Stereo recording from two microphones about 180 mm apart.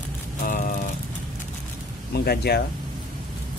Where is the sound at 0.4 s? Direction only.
50° left (ahead or behind).